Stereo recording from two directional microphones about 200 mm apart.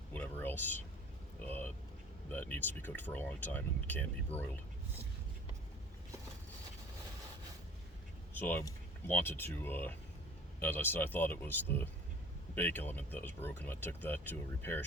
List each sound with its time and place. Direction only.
0.1 s a sound: 10° left (ahead or behind)
1.5 s vehicle: 10° left (ahead or behind)
2.3 s speech: 10° left (ahead or behind)
8.3 s speech: 10° left (ahead or behind)